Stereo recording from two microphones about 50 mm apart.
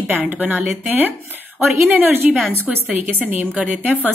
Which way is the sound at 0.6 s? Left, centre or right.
Centre.